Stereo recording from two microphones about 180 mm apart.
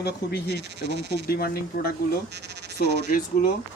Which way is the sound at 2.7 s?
50° left (ahead or behind).